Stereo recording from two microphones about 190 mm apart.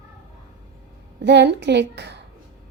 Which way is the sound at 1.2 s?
65° right (ahead or behind).